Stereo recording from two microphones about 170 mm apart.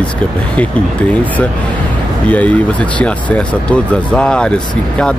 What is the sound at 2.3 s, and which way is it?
Speech, 10° left (ahead or behind).